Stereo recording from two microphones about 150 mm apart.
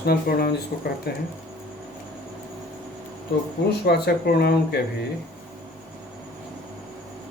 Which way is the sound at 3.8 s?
90° left.